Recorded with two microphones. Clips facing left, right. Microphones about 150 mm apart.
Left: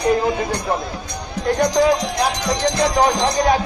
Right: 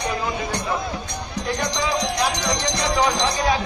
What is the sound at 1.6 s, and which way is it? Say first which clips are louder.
A man's voice: left 9 dB; 50° left (ahead or behind).